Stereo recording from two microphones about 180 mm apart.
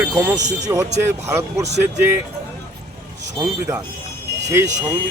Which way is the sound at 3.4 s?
25° right (ahead or behind).